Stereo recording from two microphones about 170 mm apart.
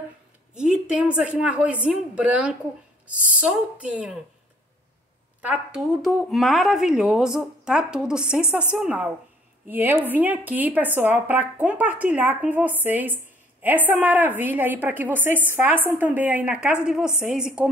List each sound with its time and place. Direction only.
0.6 s speech: 5° right (ahead or behind)
5.4 s speech: 5° right (ahead or behind)